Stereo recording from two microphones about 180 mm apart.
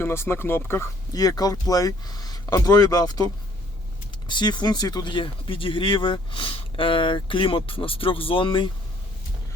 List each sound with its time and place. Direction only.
0.0 s speech: 15° left (ahead or behind)
4.3 s speech: 25° left (ahead or behind)